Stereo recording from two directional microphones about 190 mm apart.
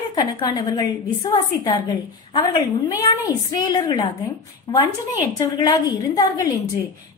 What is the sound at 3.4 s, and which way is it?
A woman's voice, 20° left (ahead or behind).